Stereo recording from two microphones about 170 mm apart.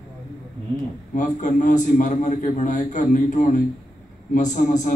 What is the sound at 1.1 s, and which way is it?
A man's voice, 50° left (ahead or behind).